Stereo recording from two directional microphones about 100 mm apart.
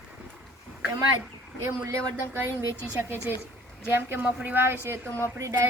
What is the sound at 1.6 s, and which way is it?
Speech, 30° right (ahead or behind).